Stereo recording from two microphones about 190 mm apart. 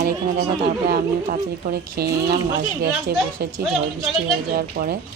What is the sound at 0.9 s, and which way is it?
A woman's voice, 55° right (ahead or behind).